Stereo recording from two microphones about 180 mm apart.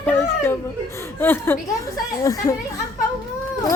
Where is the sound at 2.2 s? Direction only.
20° left (ahead or behind).